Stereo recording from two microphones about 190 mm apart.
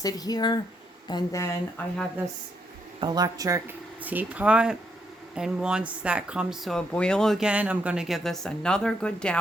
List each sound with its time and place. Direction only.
0.0 s speech: 20° left (ahead or behind)
3.0 s speech: 20° right (ahead or behind); by 9.4 s 5° left (ahead or behind)